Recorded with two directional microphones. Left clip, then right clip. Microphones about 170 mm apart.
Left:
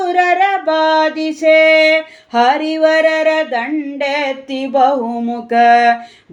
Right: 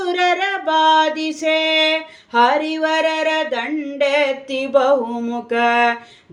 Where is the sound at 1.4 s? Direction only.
25° left (ahead or behind).